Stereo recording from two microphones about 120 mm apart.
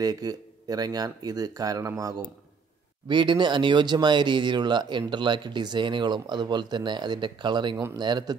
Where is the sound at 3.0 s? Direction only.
40° right (ahead or behind).